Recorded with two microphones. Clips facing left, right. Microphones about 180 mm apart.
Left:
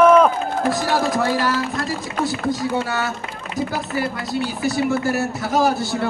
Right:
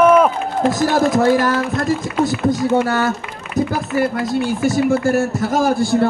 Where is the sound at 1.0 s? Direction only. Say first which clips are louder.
Right 6 dB; 50° right (ahead or behind).